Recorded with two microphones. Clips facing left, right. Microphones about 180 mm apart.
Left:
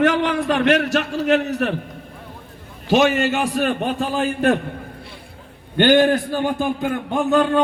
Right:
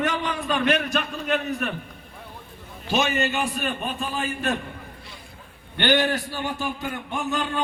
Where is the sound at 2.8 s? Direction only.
90° left; by 4.6 s 60° left (ahead or behind).